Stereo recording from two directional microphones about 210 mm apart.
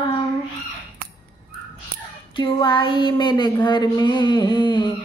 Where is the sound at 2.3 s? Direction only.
25° left (ahead or behind).